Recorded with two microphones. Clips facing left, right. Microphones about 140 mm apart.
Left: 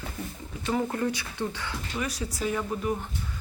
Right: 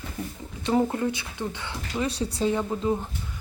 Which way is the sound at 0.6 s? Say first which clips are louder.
Right 4 dB; 25° right (ahead or behind).